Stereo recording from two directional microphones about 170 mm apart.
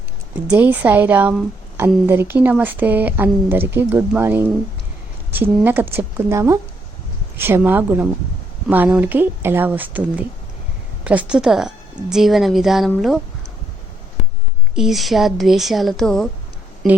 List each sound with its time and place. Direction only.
0.4 s a woman's voice: 10° right (ahead or behind)
14.8 s a woman's voice: centre (ahead or behind)